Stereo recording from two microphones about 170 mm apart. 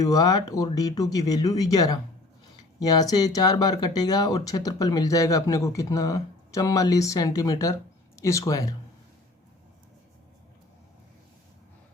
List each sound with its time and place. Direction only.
0.0 s speech: 20° left (ahead or behind)